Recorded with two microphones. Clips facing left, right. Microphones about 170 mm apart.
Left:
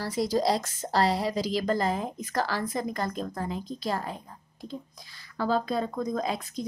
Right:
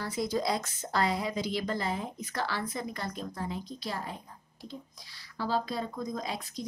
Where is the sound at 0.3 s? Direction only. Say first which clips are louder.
Left 7 dB; 35° left (ahead or behind).